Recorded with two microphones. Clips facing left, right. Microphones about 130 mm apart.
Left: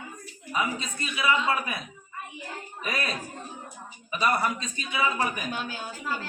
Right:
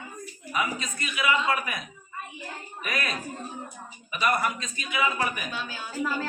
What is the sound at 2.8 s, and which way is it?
A man's voice, 35° left (ahead or behind).